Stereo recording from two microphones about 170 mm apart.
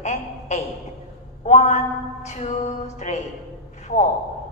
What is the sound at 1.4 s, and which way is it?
Speech, 45° left (ahead or behind).